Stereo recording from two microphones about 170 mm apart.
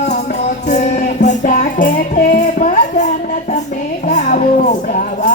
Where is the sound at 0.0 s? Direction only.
45° left (ahead or behind).